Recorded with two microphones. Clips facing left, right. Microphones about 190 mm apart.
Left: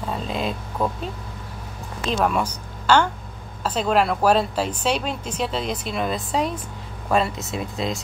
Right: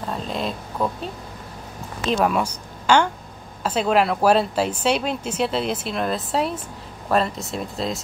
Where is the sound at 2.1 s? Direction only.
Centre (ahead or behind).